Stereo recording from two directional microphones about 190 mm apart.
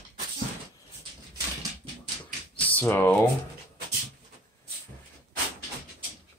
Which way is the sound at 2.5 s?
10° left (ahead or behind).